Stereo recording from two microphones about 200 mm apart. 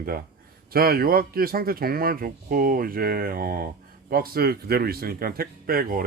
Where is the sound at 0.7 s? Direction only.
50° right (ahead or behind).